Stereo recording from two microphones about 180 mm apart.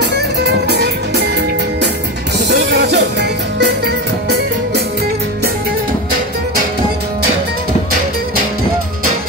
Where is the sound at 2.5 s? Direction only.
65° right (ahead or behind).